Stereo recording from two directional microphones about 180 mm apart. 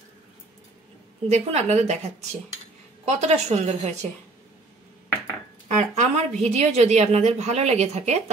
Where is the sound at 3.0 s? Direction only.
40° right (ahead or behind).